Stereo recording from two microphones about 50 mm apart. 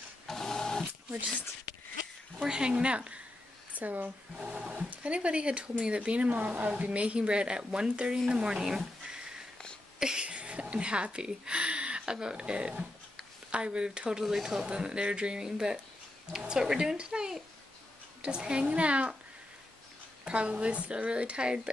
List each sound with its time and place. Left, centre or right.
0.3 s printer: centre
2.3 s speech: centre; by 4.1 s right
4.4 s speech: centre
9.9 s a sound: centre
10.2 s speech: right
14.2 s speech: centre; by 19.1 s right
20.2 s speech: right